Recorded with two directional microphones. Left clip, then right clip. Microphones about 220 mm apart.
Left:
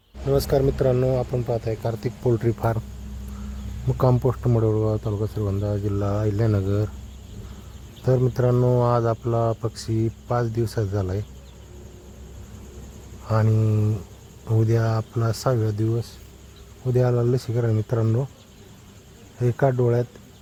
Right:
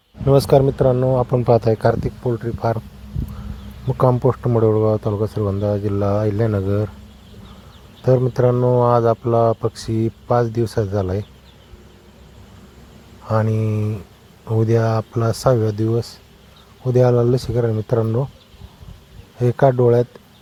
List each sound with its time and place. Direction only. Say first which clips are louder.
0.3 s speech: right 8 dB; 20° right (ahead or behind)
0.8 s speech: right 5 dB; 5° right (ahead or behind)
1.5 s speech: right 11 dB; 30° right (ahead or behind)
2.6 s speech: right 5 dB; centre (ahead or behind)
3.8 s speech: right 6 dB; 5° right (ahead or behind)
8.0 s speech: right 6 dB; 5° right (ahead or behind)
13.2 s speech: right 4 dB; 5° right (ahead or behind)
19.4 s speech: right 7 dB; 5° right (ahead or behind)